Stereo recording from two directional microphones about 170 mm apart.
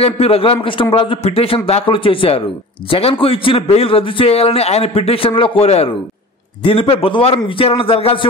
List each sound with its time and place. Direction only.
0.0 s a man's voice: 35° left (ahead or behind)